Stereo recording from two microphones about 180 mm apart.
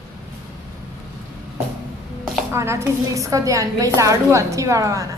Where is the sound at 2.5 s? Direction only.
15° right (ahead or behind).